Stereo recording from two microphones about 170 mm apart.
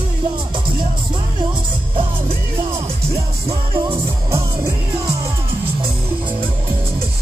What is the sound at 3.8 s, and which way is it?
Music, 15° right (ahead or behind).